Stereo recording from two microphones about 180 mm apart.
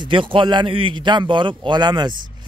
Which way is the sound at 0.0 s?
30° right (ahead or behind).